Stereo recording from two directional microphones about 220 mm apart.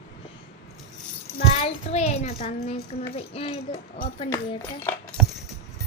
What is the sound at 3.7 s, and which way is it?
Speech, 45° left (ahead or behind).